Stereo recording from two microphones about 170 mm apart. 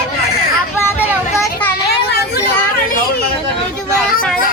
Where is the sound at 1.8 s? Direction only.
70° left (ahead or behind).